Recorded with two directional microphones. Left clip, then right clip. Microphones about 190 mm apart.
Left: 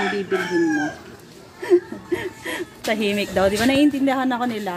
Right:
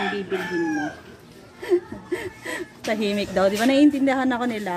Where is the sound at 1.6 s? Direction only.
Centre (ahead or behind); by 4.7 s 25° right (ahead or behind).